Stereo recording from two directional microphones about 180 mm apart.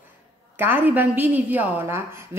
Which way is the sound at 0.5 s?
10° right (ahead or behind).